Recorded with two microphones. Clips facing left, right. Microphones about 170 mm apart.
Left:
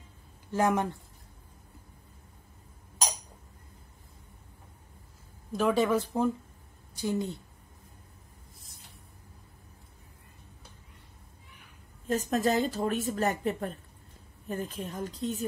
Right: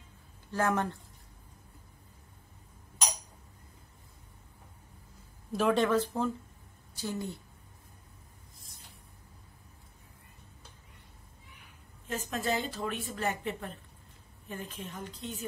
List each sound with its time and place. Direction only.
0.5 s speech: 15° left (ahead or behind)
5.5 s speech: centre (ahead or behind); by 7.3 s 20° left (ahead or behind)
12.1 s speech: 40° left (ahead or behind)